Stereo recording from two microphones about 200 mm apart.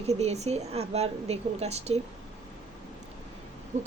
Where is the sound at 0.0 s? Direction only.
35° right (ahead or behind).